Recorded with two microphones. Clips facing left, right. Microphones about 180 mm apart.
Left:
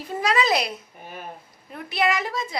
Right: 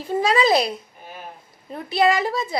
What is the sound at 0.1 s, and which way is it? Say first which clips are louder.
Speech: right 4 dB; 30° right (ahead or behind).